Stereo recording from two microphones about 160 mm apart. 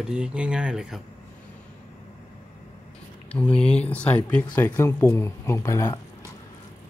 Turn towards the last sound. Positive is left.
turn(degrees=20)  # may be behind; listen again after turning